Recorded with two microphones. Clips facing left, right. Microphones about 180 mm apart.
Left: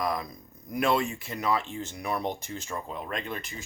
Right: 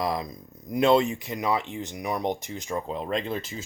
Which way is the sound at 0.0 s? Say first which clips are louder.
Right 2 dB; 25° right (ahead or behind).